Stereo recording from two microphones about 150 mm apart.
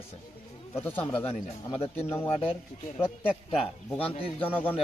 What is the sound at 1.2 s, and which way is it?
Speech, 40° left (ahead or behind).